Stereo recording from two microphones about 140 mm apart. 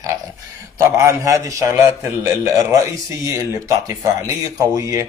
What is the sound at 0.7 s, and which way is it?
Speech, 20° right (ahead or behind).